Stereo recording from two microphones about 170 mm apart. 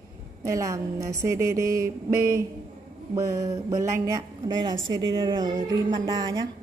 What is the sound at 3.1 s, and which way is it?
A woman's voice, 20° right (ahead or behind).